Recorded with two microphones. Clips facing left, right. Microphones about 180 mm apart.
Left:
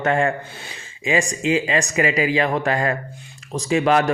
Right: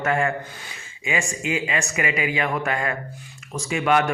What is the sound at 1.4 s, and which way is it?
Speech, 30° left (ahead or behind).